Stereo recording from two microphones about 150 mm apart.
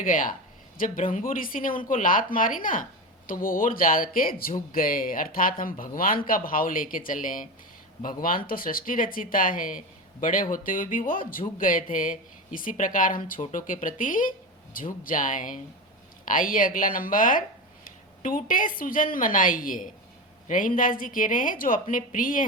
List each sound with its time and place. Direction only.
0.0 s a woman's voice: 65° left (ahead or behind)